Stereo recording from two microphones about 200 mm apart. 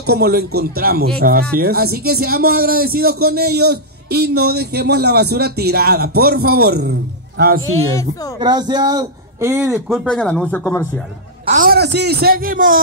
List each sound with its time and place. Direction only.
0.0 s speech: 55° right (ahead or behind)
7.6 s speech: 15° left (ahead or behind)
8.4 s a man's voice: 20° right (ahead or behind)
9.8 s speech: 5° left (ahead or behind)
11.4 s speech: 40° right (ahead or behind)